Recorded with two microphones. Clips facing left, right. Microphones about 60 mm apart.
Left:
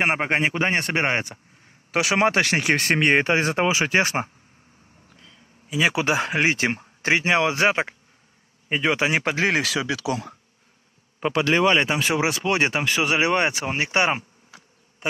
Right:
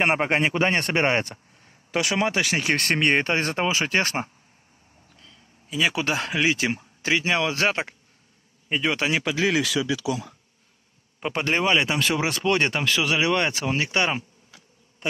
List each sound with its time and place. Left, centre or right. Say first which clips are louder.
0.0 s speech: even; centre
2.1 s speech: left 5 dB; left
2.6 s speech: left 2 dB; centre
5.7 s speech: left 3 dB; centre
6.2 s speech: left 1 dB; left
7.5 s speech: left 3 dB; centre
9.2 s speech: left 1 dB; left
9.6 s speech: even; left
11.3 s speech: left 4 dB; right
11.8 s speech: left 2 dB; centre
12.8 s speech: left 1 dB; left